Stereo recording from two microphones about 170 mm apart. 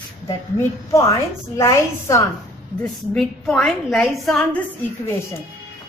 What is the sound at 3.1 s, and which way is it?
A woman's voice, 5° left (ahead or behind).